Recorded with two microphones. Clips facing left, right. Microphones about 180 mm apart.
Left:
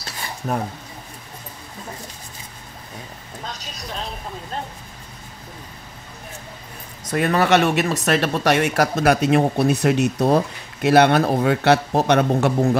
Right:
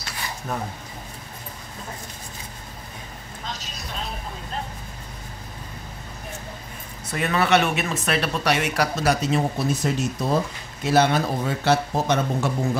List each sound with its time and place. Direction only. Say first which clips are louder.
7.1 s speech: left 4 dB; 40° left (ahead or behind); by 12.5 s 65° left (ahead or behind)